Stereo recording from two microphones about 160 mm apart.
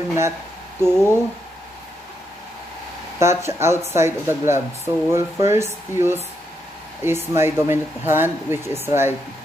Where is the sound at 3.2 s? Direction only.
15° right (ahead or behind).